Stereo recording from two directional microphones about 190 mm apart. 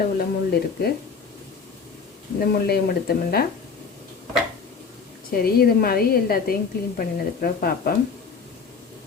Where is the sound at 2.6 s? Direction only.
55° left (ahead or behind).